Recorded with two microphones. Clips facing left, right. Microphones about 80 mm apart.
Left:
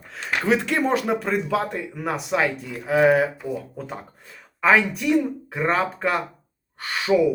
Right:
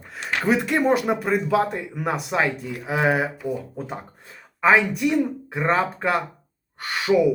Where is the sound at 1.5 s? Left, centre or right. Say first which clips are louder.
Right 3 dB; centre.